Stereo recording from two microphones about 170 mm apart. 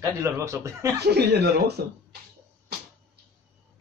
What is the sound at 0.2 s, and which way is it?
Speech, 15° right (ahead or behind).